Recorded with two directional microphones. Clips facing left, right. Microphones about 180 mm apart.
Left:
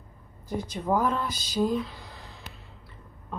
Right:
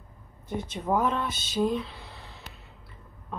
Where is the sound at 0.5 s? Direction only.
25° right (ahead or behind).